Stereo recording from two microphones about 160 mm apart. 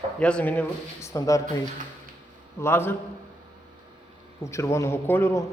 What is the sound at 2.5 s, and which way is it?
Speech, 15° left (ahead or behind).